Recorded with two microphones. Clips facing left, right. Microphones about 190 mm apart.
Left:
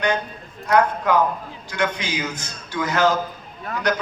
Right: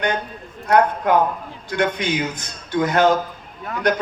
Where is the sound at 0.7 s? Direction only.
55° right (ahead or behind).